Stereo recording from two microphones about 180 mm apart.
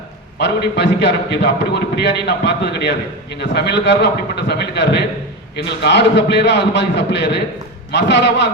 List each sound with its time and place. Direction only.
0.3 s a man's voice: 70° left (ahead or behind)